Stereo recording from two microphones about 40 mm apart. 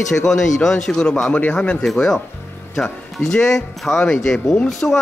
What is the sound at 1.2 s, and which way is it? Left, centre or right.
Speech, left.